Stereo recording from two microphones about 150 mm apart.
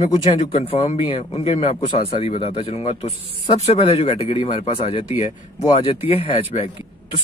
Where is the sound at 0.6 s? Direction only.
45° left (ahead or behind).